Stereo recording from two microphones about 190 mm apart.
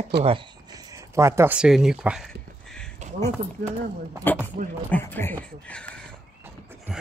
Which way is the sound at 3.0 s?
40° right (ahead or behind).